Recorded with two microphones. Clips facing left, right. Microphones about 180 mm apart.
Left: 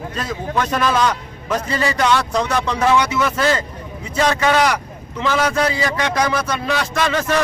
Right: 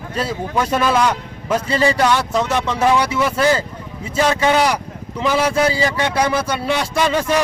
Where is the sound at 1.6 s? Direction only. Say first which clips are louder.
Right 4 dB; 30° right (ahead or behind).